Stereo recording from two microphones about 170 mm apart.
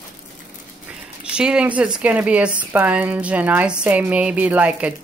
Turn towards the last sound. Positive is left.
turn(degrees=-10)  # may be behind; listen again after turning